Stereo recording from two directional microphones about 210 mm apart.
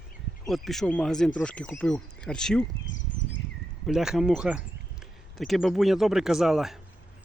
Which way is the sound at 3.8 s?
5° right (ahead or behind).